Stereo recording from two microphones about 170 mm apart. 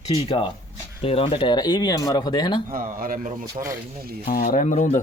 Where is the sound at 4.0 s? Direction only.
65° right (ahead or behind).